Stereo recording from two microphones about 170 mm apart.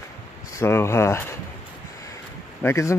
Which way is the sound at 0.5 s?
15° left (ahead or behind).